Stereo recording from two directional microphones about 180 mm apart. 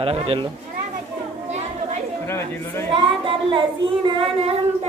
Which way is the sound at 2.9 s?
30° right (ahead or behind).